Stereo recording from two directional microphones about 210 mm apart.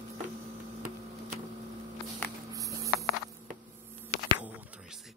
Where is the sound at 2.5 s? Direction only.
15° right (ahead or behind).